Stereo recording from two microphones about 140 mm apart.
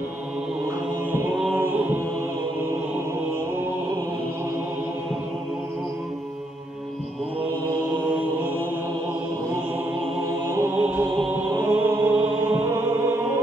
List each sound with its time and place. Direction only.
1.6 s chant: 10° right (ahead or behind)
10.5 s music: 15° right (ahead or behind)